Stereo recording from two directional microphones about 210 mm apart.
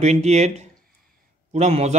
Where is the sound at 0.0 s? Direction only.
30° right (ahead or behind).